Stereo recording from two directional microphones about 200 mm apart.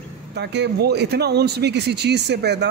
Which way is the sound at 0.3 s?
60° right (ahead or behind).